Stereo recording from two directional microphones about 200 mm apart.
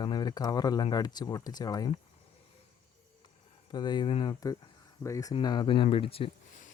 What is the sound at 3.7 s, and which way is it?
Speech, 20° left (ahead or behind).